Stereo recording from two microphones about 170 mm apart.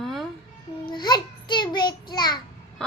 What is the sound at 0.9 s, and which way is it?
Child singing, 25° left (ahead or behind).